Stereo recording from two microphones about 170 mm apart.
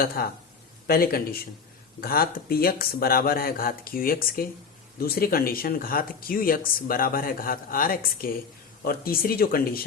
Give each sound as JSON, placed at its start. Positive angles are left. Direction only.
{"t": 0.2, "sound": "speech", "side_deg": 65}